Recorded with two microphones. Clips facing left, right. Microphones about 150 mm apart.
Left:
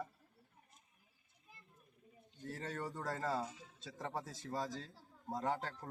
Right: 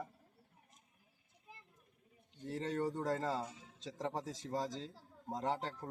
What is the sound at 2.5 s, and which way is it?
Speech, 25° right (ahead or behind).